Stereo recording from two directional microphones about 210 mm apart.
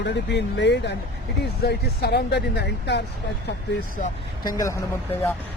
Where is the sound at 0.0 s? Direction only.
55° left (ahead or behind).